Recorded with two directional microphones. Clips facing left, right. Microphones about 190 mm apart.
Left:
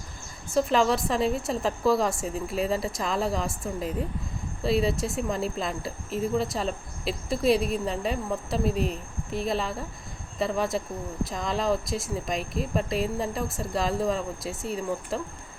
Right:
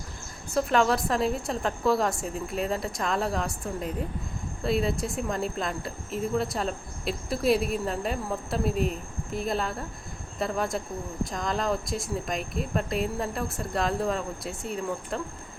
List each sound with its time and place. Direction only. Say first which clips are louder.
0.5 s speech: left 1 dB; centre (ahead or behind)